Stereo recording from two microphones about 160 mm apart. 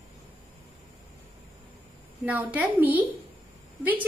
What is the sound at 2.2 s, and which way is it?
A woman's voice, 10° right (ahead or behind).